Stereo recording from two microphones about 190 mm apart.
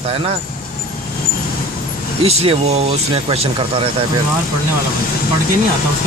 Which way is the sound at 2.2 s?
30° right (ahead or behind).